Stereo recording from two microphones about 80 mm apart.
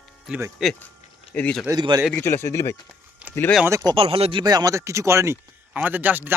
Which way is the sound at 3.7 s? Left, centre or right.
Right.